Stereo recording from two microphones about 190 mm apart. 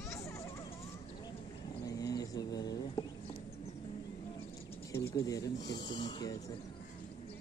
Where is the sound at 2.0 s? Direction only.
20° left (ahead or behind).